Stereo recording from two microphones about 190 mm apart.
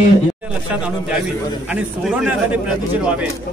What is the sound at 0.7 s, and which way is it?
A man's voice, 5° right (ahead or behind).